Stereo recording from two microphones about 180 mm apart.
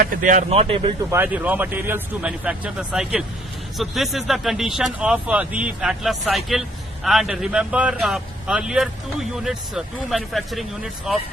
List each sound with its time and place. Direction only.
0.0 s speech: 50° right (ahead or behind); by 0.9 s 30° right (ahead or behind)
1.1 s a man's voice: 10° right (ahead or behind)